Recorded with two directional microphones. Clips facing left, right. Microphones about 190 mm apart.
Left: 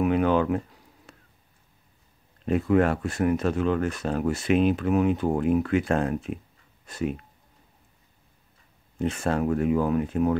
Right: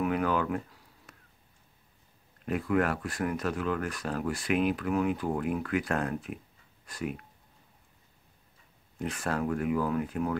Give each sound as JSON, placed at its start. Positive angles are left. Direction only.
{"t": 0.0, "sound": "a sound", "side_deg": 25}
{"t": 2.4, "sound": "speech", "side_deg": 25}
{"t": 8.9, "sound": "speech", "side_deg": 25}